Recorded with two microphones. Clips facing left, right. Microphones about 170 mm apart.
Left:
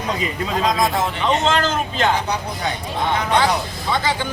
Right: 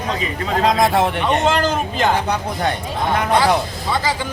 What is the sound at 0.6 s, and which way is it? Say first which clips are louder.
Speech: right 4 dB; 60° right (ahead or behind).